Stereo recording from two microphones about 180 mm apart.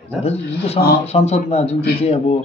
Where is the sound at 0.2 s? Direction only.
35° left (ahead or behind).